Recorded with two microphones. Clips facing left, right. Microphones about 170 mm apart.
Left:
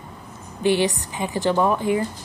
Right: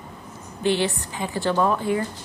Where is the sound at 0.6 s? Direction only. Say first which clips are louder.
Left 3 dB; 15° left (ahead or behind).